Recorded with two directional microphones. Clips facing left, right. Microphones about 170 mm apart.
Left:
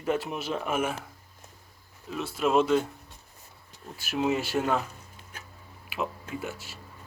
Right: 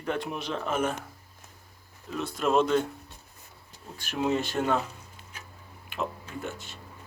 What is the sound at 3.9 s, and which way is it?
Speech, 5° left (ahead or behind).